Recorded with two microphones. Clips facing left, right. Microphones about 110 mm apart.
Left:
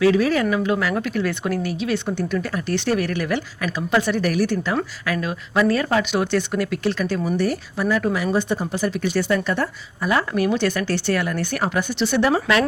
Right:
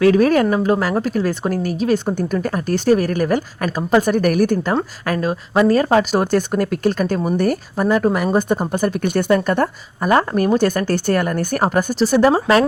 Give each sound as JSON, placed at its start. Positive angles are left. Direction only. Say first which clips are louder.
{"t": 0.0, "sound": "a woman's voice", "louder": "right 4 dB", "side_deg": -50}